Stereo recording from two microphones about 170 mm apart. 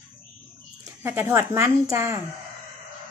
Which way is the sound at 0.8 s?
15° right (ahead or behind).